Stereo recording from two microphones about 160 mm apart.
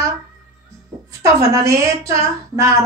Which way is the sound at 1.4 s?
20° right (ahead or behind).